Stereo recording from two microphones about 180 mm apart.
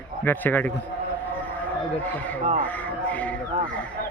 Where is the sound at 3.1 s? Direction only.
10° left (ahead or behind).